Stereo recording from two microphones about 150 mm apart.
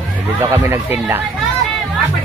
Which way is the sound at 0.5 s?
15° right (ahead or behind).